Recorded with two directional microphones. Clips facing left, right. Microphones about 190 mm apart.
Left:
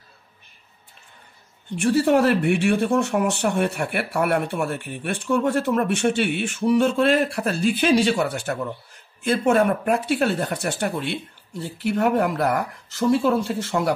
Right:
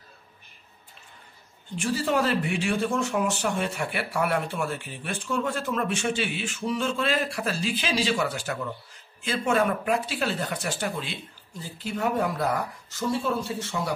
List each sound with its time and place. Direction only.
1.8 s speech: 60° left (ahead or behind)
13.1 s speech: 80° left